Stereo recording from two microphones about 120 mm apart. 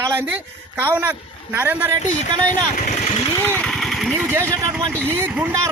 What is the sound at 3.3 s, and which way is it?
Speech, 15° left (ahead or behind).